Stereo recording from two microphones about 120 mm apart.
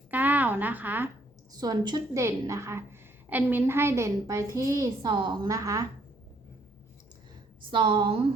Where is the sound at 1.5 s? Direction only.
35° right (ahead or behind).